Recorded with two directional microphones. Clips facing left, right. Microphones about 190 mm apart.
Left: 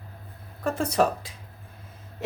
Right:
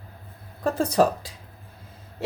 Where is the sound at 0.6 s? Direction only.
35° right (ahead or behind).